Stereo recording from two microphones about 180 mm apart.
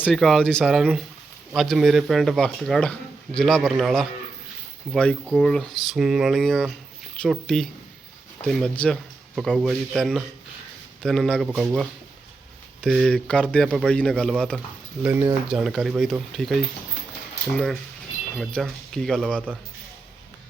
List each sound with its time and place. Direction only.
0.0 s speech: centre (ahead or behind)
15.0 s speech: 15° right (ahead or behind)
15.4 s speech: 5° right (ahead or behind)
18.3 s speech: centre (ahead or behind)